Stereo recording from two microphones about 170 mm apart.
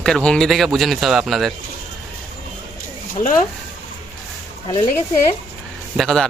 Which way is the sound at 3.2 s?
50° left (ahead or behind).